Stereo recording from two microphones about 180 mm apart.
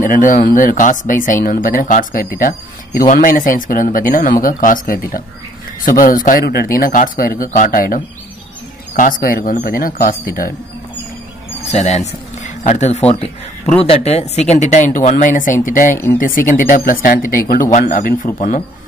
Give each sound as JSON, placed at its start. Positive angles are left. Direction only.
{"t": 0.0, "sound": "speech", "side_deg": 45}
{"t": 11.6, "sound": "speech", "side_deg": 40}